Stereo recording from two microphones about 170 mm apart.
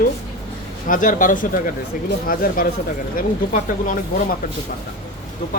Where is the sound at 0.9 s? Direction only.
50° left (ahead or behind).